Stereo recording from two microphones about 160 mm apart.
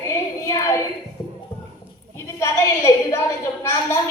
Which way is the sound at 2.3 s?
15° left (ahead or behind).